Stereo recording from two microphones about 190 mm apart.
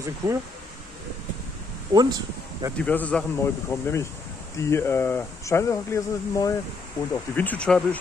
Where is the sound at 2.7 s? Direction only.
10° left (ahead or behind).